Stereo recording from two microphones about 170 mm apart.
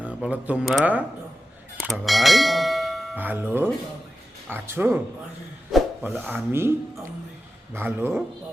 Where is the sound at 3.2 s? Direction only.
10° right (ahead or behind).